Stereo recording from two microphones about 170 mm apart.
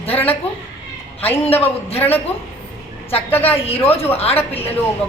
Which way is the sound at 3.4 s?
35° left (ahead or behind).